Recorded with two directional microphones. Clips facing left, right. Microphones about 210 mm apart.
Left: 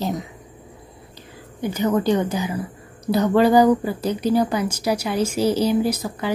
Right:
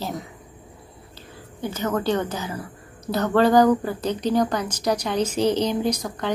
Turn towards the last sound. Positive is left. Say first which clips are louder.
# left 1 dB
turn(degrees=5)  # may be behind; listen again after turning